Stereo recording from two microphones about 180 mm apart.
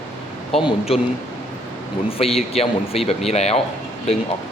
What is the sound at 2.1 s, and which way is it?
Speech, 35° left (ahead or behind).